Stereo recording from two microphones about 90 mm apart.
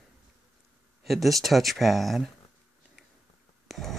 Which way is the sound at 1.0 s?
Centre (ahead or behind).